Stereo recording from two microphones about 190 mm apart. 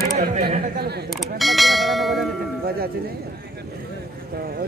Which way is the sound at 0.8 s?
60° right (ahead or behind).